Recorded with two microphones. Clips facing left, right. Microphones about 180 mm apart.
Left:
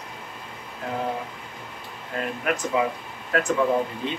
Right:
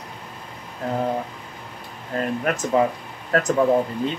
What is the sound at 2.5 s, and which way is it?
Speech, 40° right (ahead or behind).